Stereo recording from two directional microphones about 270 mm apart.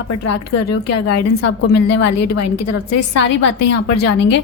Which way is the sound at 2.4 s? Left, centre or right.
Left.